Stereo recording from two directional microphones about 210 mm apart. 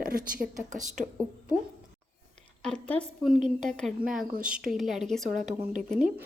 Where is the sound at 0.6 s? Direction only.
35° right (ahead or behind).